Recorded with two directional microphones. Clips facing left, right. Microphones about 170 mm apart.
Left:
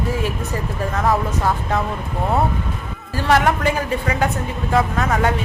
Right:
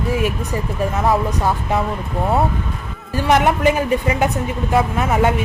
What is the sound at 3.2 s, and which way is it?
Speech, 20° right (ahead or behind).